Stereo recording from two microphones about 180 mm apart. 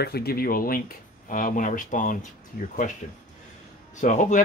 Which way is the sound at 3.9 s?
45° left (ahead or behind).